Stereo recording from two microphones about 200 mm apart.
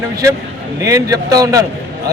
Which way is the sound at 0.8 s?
15° right (ahead or behind).